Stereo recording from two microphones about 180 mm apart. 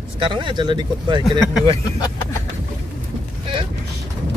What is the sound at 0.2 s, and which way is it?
Speech, 25° right (ahead or behind).